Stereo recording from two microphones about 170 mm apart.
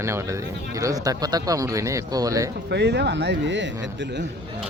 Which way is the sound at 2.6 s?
85° right.